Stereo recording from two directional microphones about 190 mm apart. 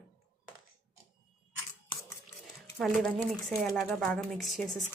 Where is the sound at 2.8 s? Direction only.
Centre (ahead or behind).